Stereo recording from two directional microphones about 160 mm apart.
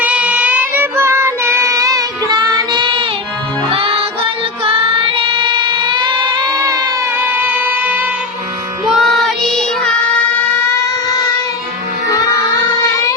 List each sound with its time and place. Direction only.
0.0 s child singing: 10° right (ahead or behind); by 3.1 s 30° right (ahead or behind)
3.8 s music: 35° right (ahead or behind)
4.6 s child singing: 35° right (ahead or behind); by 8.0 s 10° right (ahead or behind)
8.9 s child singing: centre (ahead or behind)